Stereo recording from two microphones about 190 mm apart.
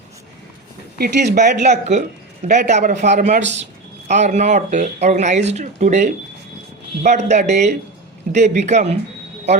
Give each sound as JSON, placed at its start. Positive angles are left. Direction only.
{"t": 0.9, "sound": "speech", "side_deg": -55}
{"t": 1.5, "sound": "speech", "side_deg": -40}